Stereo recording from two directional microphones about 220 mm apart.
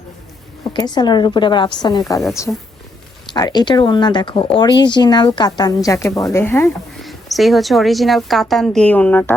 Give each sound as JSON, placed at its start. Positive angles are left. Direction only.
{"t": 0.6, "sound": "speech", "side_deg": 20}
{"t": 3.3, "sound": "speech", "side_deg": 20}
{"t": 7.0, "sound": "a woman's voice", "side_deg": 0}